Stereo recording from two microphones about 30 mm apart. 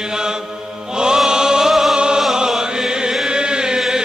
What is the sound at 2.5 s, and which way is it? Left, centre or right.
Chant, centre.